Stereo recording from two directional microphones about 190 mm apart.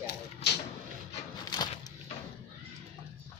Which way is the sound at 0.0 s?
60° left (ahead or behind).